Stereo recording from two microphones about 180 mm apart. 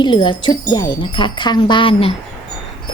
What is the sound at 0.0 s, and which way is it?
A woman's voice, 25° left (ahead or behind).